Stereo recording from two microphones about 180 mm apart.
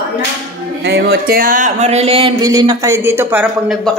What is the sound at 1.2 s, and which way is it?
A woman's voice, 50° right (ahead or behind).